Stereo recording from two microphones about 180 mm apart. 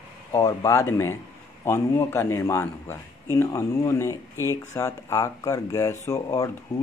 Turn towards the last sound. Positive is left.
turn(degrees=15)  # may be behind; listen again after turning